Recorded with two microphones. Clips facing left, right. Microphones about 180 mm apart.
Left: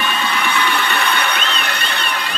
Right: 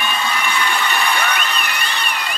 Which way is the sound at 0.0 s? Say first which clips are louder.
Left 1 dB; 65° left (ahead or behind).